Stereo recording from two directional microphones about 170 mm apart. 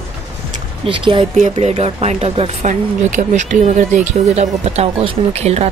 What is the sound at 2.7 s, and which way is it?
Speech, 50° right (ahead or behind).